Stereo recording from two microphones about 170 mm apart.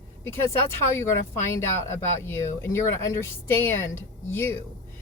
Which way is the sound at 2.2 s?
15° left (ahead or behind).